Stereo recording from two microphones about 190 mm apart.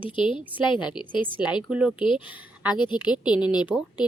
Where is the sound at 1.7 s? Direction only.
5° right (ahead or behind).